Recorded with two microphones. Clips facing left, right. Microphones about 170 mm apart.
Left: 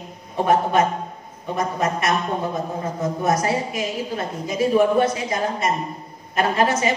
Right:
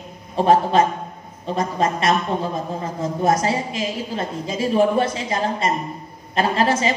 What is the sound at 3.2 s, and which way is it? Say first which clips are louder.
A woman's voice: right 2 dB; 25° right (ahead or behind).